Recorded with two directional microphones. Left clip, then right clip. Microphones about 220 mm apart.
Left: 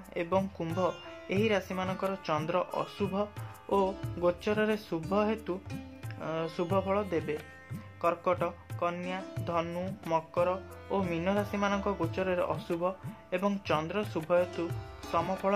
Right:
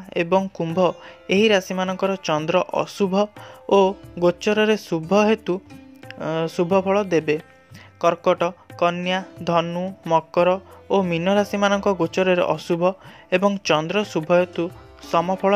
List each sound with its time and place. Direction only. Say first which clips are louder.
0.1 s speech: right 11 dB; 35° right (ahead or behind)
9.7 s speech: right 10 dB; 25° right (ahead or behind)
10.1 s speech: right 12 dB; 40° right (ahead or behind)